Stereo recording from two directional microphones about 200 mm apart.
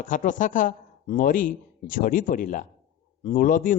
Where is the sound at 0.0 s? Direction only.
40° left (ahead or behind).